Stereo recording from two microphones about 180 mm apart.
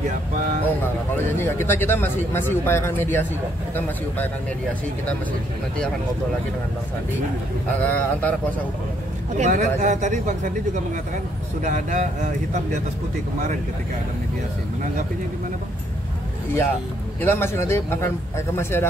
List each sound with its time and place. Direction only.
1.1 s speech: 10° left (ahead or behind)
7.8 s speech: 10° left (ahead or behind)
9.4 s speech: 40° right (ahead or behind)
17.2 s speech: 15° left (ahead or behind)